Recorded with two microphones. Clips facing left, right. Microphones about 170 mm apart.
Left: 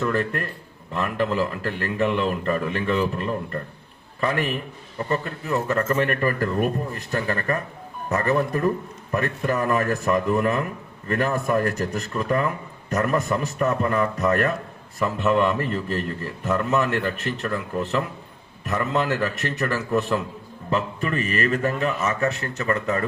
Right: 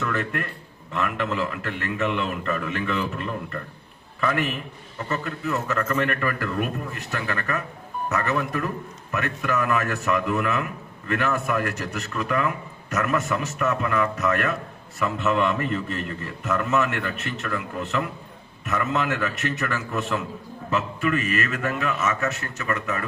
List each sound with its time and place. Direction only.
0.0 s a man's voice: 35° left (ahead or behind)
4.2 s a man's voice: 40° left (ahead or behind)